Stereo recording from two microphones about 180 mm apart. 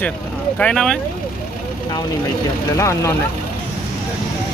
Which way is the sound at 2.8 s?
15° left (ahead or behind).